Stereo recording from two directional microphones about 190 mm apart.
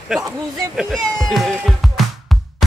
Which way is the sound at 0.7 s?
Centre (ahead or behind).